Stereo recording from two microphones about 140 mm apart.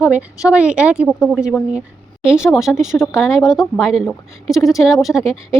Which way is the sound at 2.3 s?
5° right (ahead or behind).